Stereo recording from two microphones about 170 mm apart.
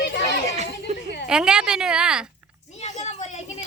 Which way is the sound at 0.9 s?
40° right (ahead or behind).